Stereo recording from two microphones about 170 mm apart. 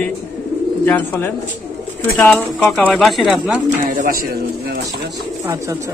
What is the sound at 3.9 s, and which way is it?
Speech, 60° right (ahead or behind).